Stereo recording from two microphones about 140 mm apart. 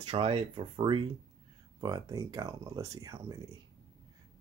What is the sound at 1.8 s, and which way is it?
Speech, 30° right (ahead or behind).